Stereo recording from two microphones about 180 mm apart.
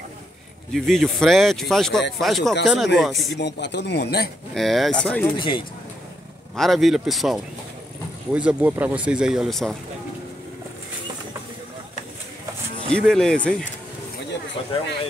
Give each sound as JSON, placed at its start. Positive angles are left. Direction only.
{"t": 0.7, "sound": "speech", "side_deg": 0}
{"t": 3.3, "sound": "speech", "side_deg": 75}
{"t": 4.6, "sound": "speech", "side_deg": 0}
{"t": 5.3, "sound": "speech", "side_deg": 25}
{"t": 6.5, "sound": "speech", "side_deg": 0}
{"t": 12.9, "sound": "speech", "side_deg": 5}